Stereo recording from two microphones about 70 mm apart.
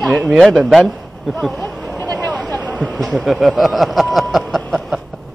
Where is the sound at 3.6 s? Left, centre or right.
Centre.